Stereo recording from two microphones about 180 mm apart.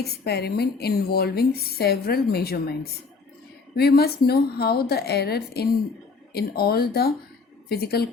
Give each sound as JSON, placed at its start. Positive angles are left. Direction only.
{"t": 0.0, "sound": "a woman's voice", "side_deg": 65}